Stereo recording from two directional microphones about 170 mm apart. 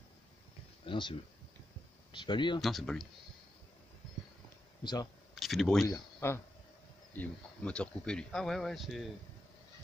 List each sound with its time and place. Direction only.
0.8 s speech: 30° left (ahead or behind)
2.1 s speech: 30° left (ahead or behind)
2.6 s speech: centre (ahead or behind)
5.3 s speech: centre (ahead or behind)
6.2 s speech: 15° left (ahead or behind)